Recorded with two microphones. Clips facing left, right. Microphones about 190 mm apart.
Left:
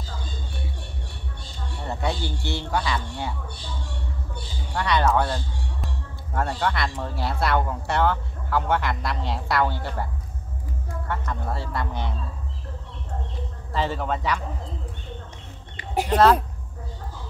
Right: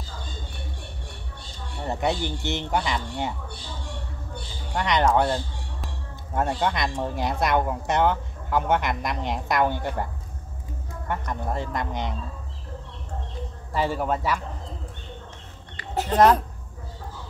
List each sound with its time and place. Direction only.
1.9 s speech: 20° right (ahead or behind)
4.7 s speech: 20° right (ahead or behind)
11.1 s speech: 15° right (ahead or behind)
13.7 s speech: 10° right (ahead or behind)
15.7 s a sound: 20° left (ahead or behind)